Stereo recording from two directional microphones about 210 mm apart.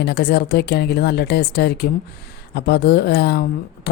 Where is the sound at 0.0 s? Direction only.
50° left (ahead or behind).